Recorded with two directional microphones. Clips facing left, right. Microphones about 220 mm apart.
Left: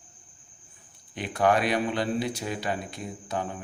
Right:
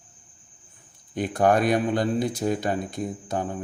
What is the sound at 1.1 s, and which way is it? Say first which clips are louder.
Speech: right 3 dB; 45° right (ahead or behind).